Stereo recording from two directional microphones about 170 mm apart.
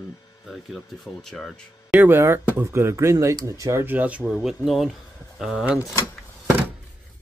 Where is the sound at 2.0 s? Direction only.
15° right (ahead or behind).